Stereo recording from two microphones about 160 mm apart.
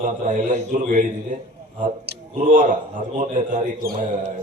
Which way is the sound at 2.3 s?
55° right (ahead or behind).